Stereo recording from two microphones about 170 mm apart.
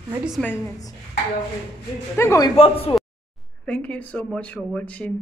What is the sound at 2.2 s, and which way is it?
Speech, 15° left (ahead or behind).